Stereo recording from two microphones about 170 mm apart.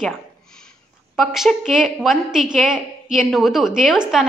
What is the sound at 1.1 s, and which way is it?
A woman's voice, centre (ahead or behind).